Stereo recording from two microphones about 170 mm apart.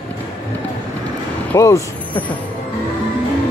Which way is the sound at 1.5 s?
15° left (ahead or behind).